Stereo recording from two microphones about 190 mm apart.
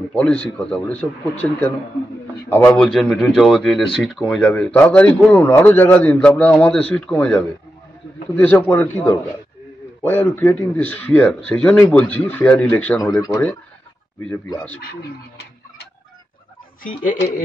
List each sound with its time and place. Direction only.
0.1 s speech: 5° left (ahead or behind)
14.8 s speech: 55° left (ahead or behind)
16.8 s speech: 45° left (ahead or behind)